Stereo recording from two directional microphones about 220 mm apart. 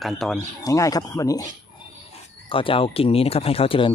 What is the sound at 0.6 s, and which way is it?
Speech, 15° left (ahead or behind).